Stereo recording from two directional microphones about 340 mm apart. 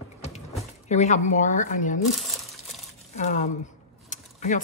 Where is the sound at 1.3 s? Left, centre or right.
Left.